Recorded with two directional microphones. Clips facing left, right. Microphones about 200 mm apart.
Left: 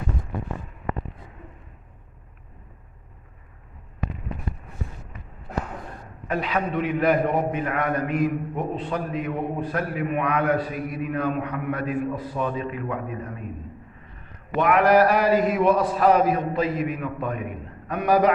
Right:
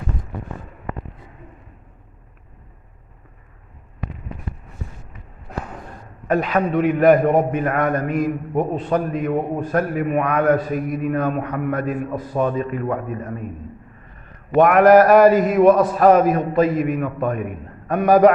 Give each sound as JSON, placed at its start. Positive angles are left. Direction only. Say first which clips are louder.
{"t": 6.2, "sound": "a man's voice", "louder": "right 6 dB", "side_deg": -45}
{"t": 14.5, "sound": "a man's voice", "louder": "right 7 dB", "side_deg": -50}